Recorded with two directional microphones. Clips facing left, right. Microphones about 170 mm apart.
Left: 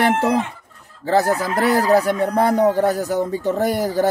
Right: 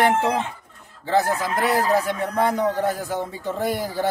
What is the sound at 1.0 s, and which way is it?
Speech, 40° left (ahead or behind).